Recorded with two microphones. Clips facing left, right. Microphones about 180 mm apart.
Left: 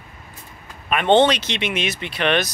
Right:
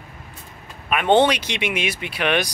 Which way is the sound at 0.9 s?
5° right (ahead or behind).